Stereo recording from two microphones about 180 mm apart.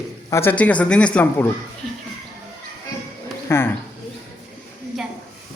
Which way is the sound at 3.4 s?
15° left (ahead or behind).